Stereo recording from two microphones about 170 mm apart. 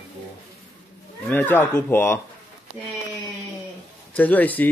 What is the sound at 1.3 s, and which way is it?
Speech, 10° left (ahead or behind).